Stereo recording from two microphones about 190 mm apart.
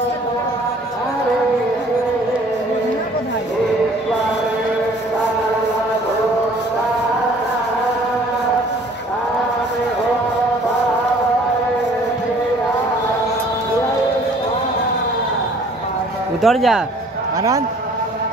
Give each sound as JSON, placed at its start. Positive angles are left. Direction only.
{"t": 16.4, "sound": "speech", "side_deg": 0}